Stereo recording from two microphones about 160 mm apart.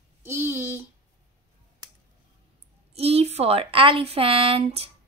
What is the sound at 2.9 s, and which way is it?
Speech, 40° right (ahead or behind).